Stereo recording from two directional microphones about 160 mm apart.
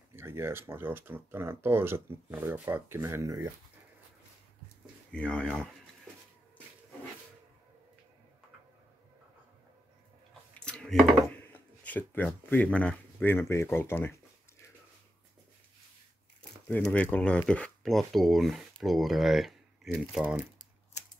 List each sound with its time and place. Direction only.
0.1 s speech: 15° right (ahead or behind)
5.1 s speech: 5° left (ahead or behind)
10.5 s a sound: 5° left (ahead or behind)
12.4 s speech: 10° left (ahead or behind)
16.9 s speech: 10° left (ahead or behind)